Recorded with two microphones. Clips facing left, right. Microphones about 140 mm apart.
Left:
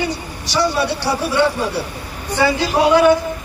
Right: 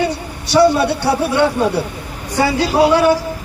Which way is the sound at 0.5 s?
55° right (ahead or behind).